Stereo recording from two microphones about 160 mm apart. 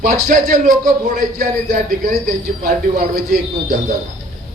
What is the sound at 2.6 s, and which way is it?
Speech, 60° right (ahead or behind).